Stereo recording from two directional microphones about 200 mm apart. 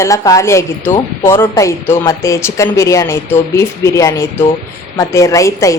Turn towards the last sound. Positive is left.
turn(degrees=15)  # may be behind; listen again after turning